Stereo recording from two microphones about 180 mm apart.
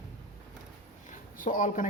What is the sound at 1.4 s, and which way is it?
Speech, 45° left (ahead or behind).